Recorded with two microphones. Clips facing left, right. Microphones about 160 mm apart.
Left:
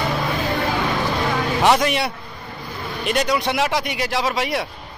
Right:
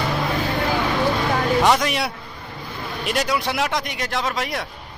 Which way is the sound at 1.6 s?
Centre (ahead or behind).